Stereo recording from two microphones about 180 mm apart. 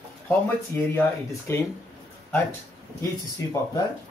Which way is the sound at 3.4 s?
15° left (ahead or behind).